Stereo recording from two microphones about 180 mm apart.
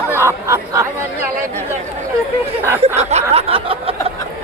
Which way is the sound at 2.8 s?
35° right (ahead or behind).